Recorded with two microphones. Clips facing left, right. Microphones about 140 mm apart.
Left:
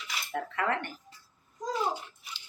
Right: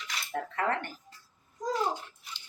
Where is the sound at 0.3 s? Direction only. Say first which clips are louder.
Even; 40° right (ahead or behind).